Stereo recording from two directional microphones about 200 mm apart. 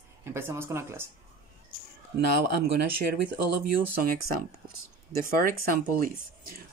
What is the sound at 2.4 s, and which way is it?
Speech, 55° right (ahead or behind).